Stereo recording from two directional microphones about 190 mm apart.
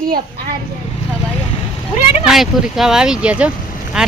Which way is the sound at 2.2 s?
Centre (ahead or behind).